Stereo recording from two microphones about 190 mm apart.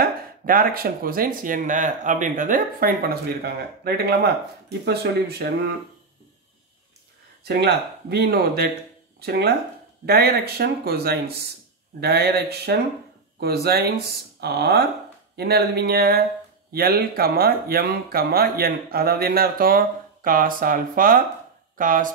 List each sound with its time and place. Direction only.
0.0 s speech: 50° right (ahead or behind)
7.4 s speech: 55° right (ahead or behind)